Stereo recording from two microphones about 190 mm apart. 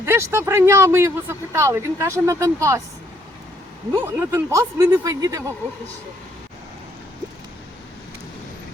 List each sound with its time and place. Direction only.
0.0 s speech: 15° right (ahead or behind)
4.0 s speech: 15° right (ahead or behind)